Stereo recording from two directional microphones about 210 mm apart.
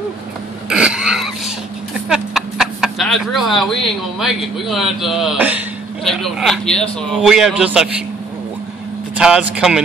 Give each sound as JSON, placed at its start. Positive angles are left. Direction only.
{"t": 0.7, "sound": "a sound", "side_deg": -5}
{"t": 2.0, "sound": "a man's voice", "side_deg": 0}
{"t": 9.1, "sound": "a man's voice", "side_deg": -5}